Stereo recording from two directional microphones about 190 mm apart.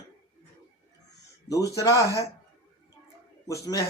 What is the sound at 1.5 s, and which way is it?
Speech, 15° left (ahead or behind).